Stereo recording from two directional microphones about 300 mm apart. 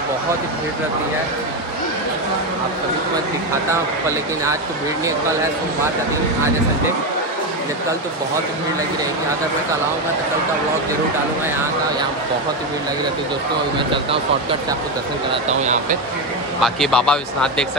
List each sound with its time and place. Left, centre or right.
15.6 s speech: right
16.6 s speech: centre